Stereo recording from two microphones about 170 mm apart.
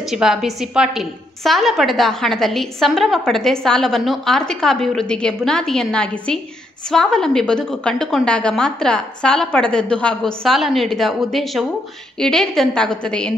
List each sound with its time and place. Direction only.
0.1 s a woman's voice: centre (ahead or behind)